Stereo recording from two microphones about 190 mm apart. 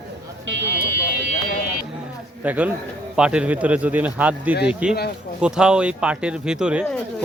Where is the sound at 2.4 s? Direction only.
5° right (ahead or behind).